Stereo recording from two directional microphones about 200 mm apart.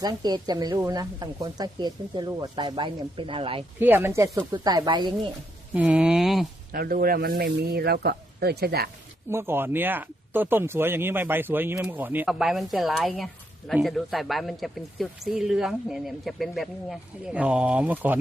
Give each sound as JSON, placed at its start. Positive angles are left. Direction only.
{"t": 0.0, "sound": "speech", "side_deg": -20}
{"t": 3.8, "sound": "speech", "side_deg": -10}
{"t": 5.7, "sound": "speech", "side_deg": -5}
{"t": 6.7, "sound": "speech", "side_deg": -45}
{"t": 9.3, "sound": "speech", "side_deg": -10}